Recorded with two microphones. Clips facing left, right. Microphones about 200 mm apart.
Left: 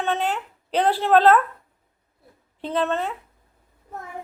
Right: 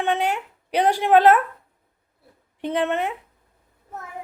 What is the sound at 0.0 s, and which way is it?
Speech, 15° right (ahead or behind).